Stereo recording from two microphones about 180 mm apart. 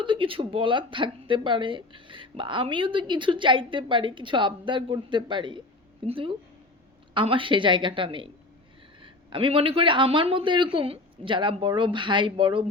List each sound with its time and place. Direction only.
0.0 s a man's voice: 30° right (ahead or behind)